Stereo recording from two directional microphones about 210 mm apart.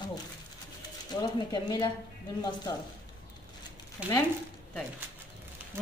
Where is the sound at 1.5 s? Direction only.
20° left (ahead or behind).